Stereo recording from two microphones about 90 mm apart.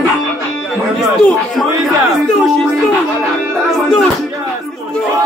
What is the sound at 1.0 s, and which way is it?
Speech, 5° left (ahead or behind).